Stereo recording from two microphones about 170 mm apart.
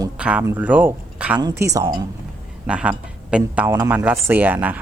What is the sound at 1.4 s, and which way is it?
Speech, 20° right (ahead or behind).